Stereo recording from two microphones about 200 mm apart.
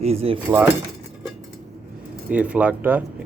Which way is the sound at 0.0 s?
30° right (ahead or behind).